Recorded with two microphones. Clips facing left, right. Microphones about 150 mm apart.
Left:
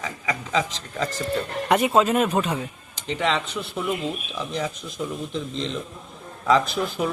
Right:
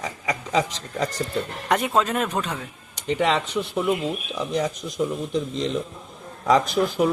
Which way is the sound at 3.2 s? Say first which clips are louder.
Right 2 dB; 10° right (ahead or behind).